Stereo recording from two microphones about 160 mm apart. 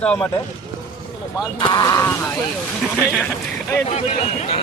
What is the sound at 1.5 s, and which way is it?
Speech, 25° left (ahead or behind).